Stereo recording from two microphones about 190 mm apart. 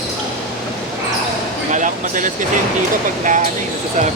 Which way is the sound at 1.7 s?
45° right (ahead or behind).